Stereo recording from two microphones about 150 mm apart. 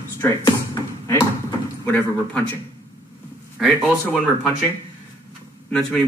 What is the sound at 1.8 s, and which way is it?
Speech, 10° left (ahead or behind).